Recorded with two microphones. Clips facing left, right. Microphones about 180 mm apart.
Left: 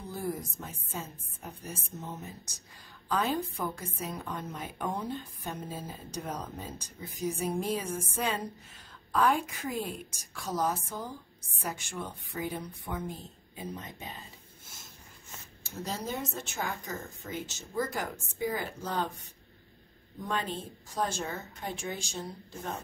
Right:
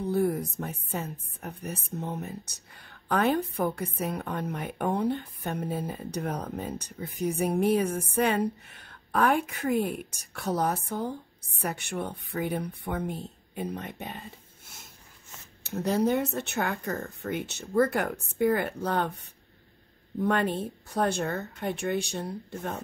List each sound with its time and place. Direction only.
0.0 s a woman's voice: 65° right (ahead or behind)
15.6 s a woman's voice: 65° right (ahead or behind)
20.2 s a woman's voice: 60° right (ahead or behind)